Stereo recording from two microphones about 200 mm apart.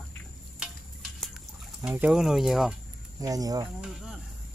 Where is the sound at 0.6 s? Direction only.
Centre (ahead or behind).